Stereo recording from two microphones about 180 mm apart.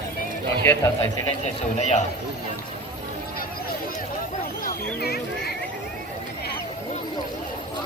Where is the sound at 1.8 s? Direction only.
40° left (ahead or behind).